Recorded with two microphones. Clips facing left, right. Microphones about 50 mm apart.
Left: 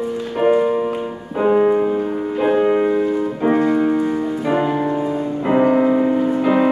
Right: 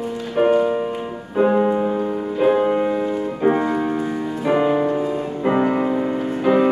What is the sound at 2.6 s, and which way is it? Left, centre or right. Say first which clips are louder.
Music: left 3 dB; centre.